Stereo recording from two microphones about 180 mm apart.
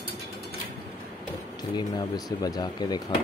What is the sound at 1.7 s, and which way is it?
Speech, 20° left (ahead or behind).